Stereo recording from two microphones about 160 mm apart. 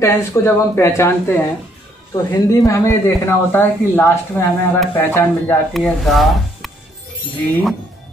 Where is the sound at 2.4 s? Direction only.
20° left (ahead or behind).